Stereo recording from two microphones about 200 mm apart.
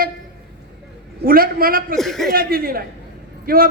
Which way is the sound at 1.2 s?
45° right (ahead or behind).